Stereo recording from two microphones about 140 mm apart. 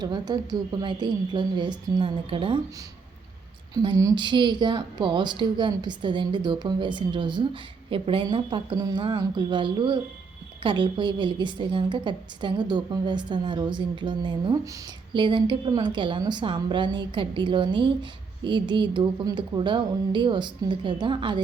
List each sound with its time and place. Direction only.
0.0 s a woman's voice: 30° right (ahead or behind)
3.8 s a woman's voice: 25° right (ahead or behind)